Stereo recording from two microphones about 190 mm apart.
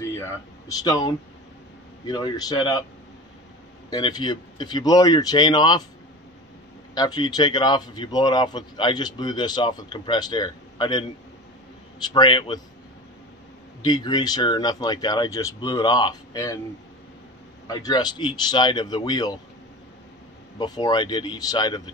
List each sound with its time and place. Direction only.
0.0 s a man's voice: 15° left (ahead or behind)
3.9 s a man's voice: 25° left (ahead or behind)
7.0 s a man's voice: 20° left (ahead or behind)
12.1 s a man's voice: 25° left (ahead or behind)
13.8 s a man's voice: 20° left (ahead or behind)
17.6 s a man's voice: 20° left (ahead or behind)
20.5 s a man's voice: 20° left (ahead or behind)